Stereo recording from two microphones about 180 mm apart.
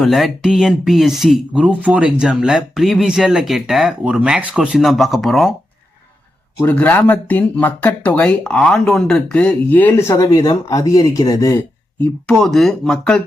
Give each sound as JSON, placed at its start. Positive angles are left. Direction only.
{"t": 0.0, "sound": "speech", "side_deg": 0}
{"t": 6.6, "sound": "speech", "side_deg": 10}
{"t": 11.9, "sound": "speech", "side_deg": 5}